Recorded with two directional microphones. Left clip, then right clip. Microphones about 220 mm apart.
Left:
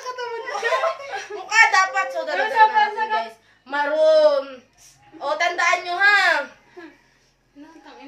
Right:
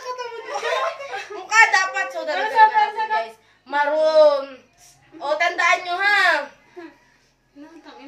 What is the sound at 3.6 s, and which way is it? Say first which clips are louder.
A woman's voice: even; 10° left (ahead or behind).